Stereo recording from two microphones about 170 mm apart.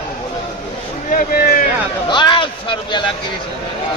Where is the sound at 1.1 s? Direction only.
55° left (ahead or behind).